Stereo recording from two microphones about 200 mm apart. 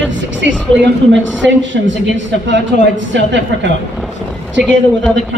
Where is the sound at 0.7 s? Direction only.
5° left (ahead or behind).